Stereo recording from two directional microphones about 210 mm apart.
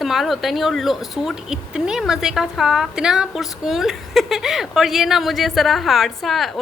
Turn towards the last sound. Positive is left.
turn(degrees=0)  # may be behind; listen again after turning